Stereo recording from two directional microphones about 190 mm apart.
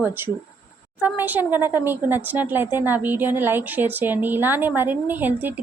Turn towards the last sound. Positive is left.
turn(degrees=-10)  # may be behind; listen again after turning